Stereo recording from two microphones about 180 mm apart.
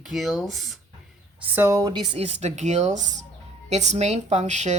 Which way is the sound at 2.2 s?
40° right (ahead or behind).